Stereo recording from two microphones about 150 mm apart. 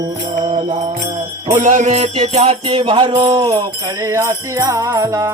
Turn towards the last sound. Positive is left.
turn(degrees=-20)  # may be behind; listen again after turning